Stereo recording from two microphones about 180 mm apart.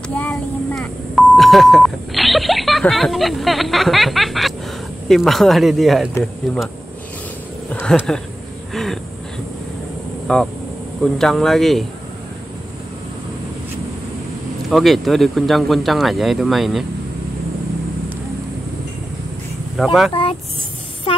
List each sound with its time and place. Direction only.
0.1 s speech: 5° left (ahead or behind)
7.7 s speech: 5° left (ahead or behind)
8.7 s a sound: centre (ahead or behind)
10.2 s speech: 5° left (ahead or behind)
14.7 s speech: centre (ahead or behind)
19.8 s speech: centre (ahead or behind)
20.1 s speech: 30° left (ahead or behind)